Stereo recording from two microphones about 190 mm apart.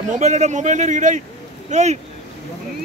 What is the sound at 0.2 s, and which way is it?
A man's voice, 40° right (ahead or behind).